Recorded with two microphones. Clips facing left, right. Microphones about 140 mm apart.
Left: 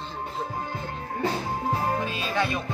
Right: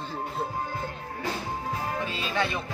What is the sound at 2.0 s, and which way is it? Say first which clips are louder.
Music: left 2 dB; 15° left (ahead or behind).